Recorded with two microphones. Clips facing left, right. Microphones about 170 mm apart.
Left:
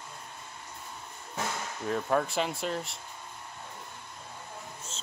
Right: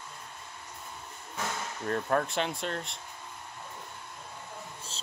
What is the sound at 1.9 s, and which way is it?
Speech, 5° left (ahead or behind).